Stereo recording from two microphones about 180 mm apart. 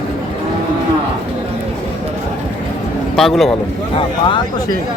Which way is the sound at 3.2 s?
Centre (ahead or behind).